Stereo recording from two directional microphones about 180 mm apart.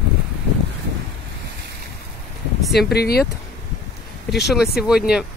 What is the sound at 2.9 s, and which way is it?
Speech, 60° left (ahead or behind).